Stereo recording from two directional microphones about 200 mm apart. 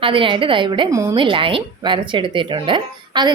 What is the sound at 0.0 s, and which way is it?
A woman's voice, 25° right (ahead or behind).